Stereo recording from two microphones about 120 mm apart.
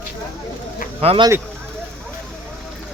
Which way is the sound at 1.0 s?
55° right (ahead or behind).